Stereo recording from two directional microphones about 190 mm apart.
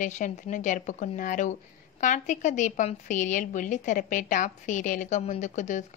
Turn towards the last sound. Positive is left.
turn(degrees=40)  # may be behind; listen again after turning